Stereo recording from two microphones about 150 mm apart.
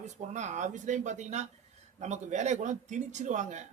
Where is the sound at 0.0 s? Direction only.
50° right (ahead or behind).